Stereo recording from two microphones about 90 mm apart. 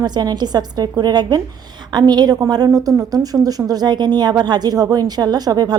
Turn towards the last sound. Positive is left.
turn(degrees=-50)  # may be behind; listen again after turning